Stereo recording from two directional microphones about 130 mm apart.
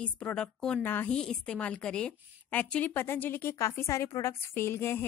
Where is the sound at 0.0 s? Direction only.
10° left (ahead or behind).